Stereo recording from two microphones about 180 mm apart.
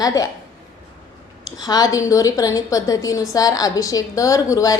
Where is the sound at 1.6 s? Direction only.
20° left (ahead or behind).